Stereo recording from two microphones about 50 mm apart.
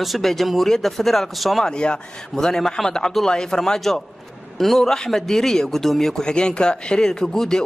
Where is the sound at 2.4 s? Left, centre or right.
Centre.